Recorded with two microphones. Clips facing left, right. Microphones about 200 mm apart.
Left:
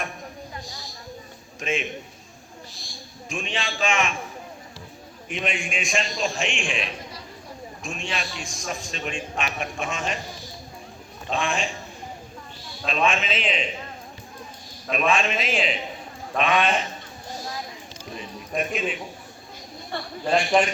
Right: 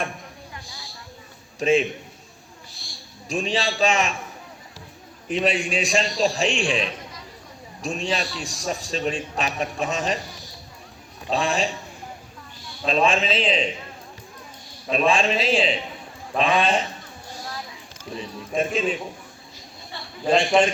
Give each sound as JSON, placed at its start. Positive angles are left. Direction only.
{"t": 0.5, "sound": "a sound", "side_deg": 40}
{"t": 1.5, "sound": "a man's voice", "side_deg": -35}
{"t": 3.2, "sound": "a man's voice", "side_deg": -35}
{"t": 5.3, "sound": "a man's voice", "side_deg": -35}
{"t": 11.3, "sound": "a man's voice", "side_deg": -35}
{"t": 12.8, "sound": "a man's voice", "side_deg": -35}
{"t": 14.8, "sound": "a man's voice", "side_deg": -30}
{"t": 18.2, "sound": "a man's voice", "side_deg": -30}
{"t": 19.9, "sound": "a sound", "side_deg": 55}